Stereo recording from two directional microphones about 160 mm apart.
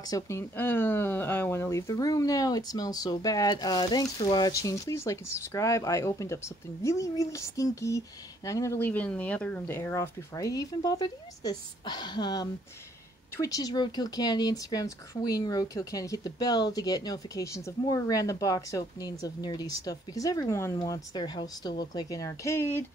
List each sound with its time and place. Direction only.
0.0 s speech: 20° left (ahead or behind)